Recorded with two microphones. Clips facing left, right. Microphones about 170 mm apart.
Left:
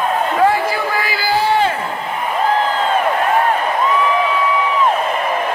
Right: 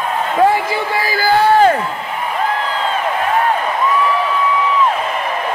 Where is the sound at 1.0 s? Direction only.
45° right (ahead or behind).